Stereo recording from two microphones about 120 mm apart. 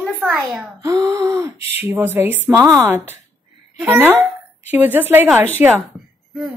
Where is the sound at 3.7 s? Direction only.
15° right (ahead or behind).